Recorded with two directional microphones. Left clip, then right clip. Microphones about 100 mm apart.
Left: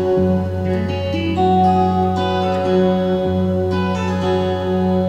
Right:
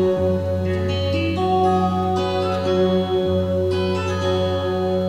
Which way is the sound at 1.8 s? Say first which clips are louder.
Left 3 dB; 30° left (ahead or behind).